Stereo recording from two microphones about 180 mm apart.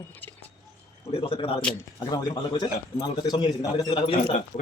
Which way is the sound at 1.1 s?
30° left (ahead or behind).